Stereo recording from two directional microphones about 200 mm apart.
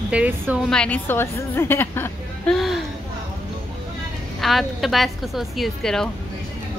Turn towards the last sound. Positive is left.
turn(degrees=0)  # may be behind; listen again after turning